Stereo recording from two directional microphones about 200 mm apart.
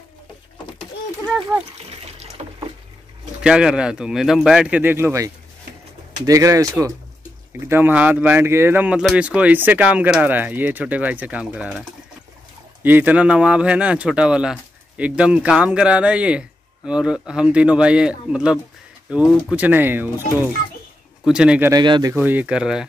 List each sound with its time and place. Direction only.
3.4 s speech: 5° right (ahead or behind)
12.8 s speech: 10° right (ahead or behind)
21.8 s speech: 25° right (ahead or behind)
22.1 s speech: 10° right (ahead or behind)